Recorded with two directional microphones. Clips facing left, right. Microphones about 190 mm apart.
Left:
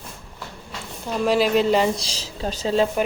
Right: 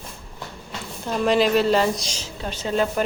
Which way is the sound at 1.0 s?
5° left (ahead or behind).